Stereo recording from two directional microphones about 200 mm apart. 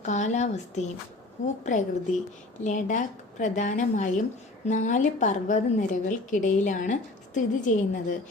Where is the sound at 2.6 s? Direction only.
40° left (ahead or behind).